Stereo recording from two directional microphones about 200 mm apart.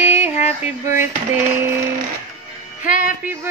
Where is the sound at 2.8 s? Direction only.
40° left (ahead or behind).